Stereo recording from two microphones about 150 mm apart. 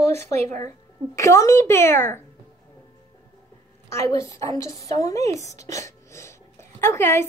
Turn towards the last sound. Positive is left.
turn(degrees=15)  # may be behind; listen again after turning